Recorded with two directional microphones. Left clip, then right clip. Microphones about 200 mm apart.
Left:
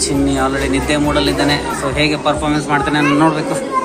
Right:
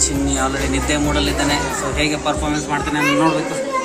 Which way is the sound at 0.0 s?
Centre (ahead or behind).